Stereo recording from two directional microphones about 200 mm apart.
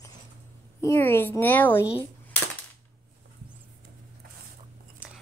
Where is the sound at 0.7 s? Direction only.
10° left (ahead or behind).